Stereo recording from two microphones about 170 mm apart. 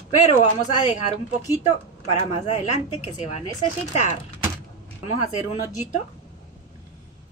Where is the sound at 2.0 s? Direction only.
40° left (ahead or behind).